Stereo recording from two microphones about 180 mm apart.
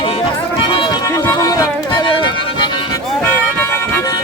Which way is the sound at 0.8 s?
20° left (ahead or behind).